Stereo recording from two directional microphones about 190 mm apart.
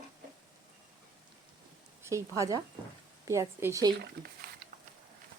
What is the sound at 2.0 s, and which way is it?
Speech, 15° right (ahead or behind).